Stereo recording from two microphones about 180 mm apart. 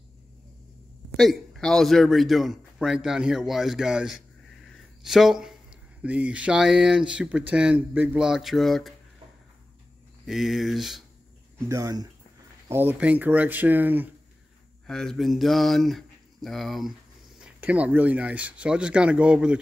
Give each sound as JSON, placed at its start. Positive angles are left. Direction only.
{"t": 1.1, "sound": "a man's voice", "side_deg": 0}
{"t": 4.7, "sound": "a sound", "side_deg": 0}
{"t": 6.0, "sound": "a man's voice", "side_deg": -5}
{"t": 10.2, "sound": "a man's voice", "side_deg": 0}
{"t": 11.7, "sound": "speech", "side_deg": -20}
{"t": 14.9, "sound": "a man's voice", "side_deg": 5}